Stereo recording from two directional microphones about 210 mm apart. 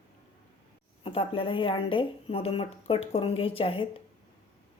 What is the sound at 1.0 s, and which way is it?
A woman's voice, 25° left (ahead or behind).